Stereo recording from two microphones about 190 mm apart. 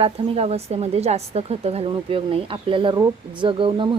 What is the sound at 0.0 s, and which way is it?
A woman's voice, 30° right (ahead or behind).